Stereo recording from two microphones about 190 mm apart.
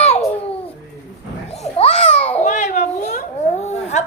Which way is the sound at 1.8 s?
30° left (ahead or behind).